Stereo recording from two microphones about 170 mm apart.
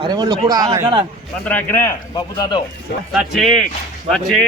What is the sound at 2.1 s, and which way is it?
Speech, 25° left (ahead or behind).